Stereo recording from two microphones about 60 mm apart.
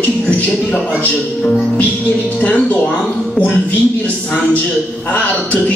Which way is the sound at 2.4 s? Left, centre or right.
Left.